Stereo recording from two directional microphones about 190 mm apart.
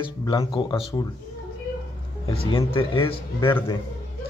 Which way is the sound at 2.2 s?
25° left (ahead or behind).